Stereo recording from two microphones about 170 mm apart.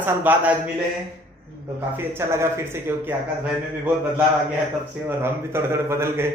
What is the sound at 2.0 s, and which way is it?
Speech, 15° right (ahead or behind).